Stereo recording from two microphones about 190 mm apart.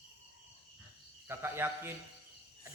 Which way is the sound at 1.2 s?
10° right (ahead or behind).